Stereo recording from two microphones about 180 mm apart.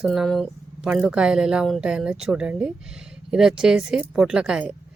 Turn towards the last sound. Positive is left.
turn(degrees=-5)  # may be behind; listen again after turning